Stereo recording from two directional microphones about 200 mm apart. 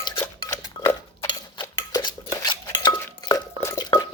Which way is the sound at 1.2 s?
20° left (ahead or behind).